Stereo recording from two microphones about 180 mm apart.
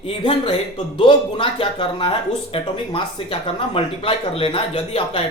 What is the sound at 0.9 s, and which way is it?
Speech, 30° left (ahead or behind).